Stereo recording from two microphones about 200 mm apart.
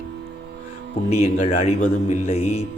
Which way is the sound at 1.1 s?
35° left (ahead or behind).